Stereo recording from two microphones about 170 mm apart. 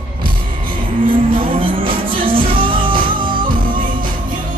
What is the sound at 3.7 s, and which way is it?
Music, 55° right (ahead or behind).